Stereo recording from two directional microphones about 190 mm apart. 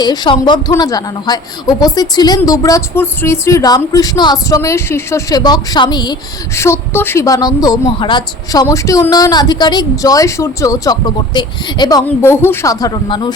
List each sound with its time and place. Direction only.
0.0 s a woman's voice: 20° left (ahead or behind)